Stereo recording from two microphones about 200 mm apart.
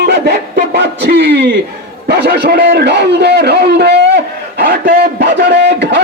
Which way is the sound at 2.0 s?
55° right (ahead or behind).